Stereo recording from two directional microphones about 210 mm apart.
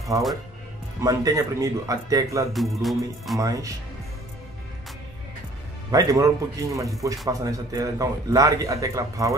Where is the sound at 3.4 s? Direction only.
15° right (ahead or behind).